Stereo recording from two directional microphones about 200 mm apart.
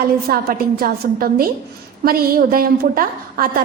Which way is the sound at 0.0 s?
45° right (ahead or behind).